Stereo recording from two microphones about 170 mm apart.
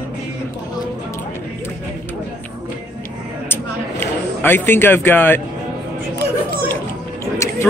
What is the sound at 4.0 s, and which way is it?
Speech, 10° left (ahead or behind).